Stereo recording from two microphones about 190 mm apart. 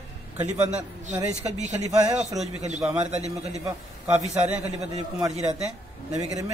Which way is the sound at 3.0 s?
35° right (ahead or behind).